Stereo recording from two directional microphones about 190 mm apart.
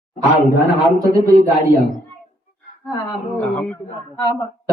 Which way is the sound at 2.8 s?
Centre (ahead or behind).